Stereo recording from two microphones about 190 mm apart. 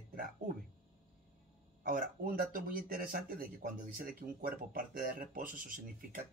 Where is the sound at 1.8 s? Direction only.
50° right (ahead or behind).